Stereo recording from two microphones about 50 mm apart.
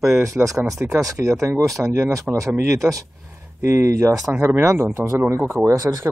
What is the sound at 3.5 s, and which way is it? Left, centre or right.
Speech, right.